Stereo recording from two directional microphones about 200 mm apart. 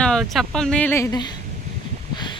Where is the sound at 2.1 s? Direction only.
20° left (ahead or behind).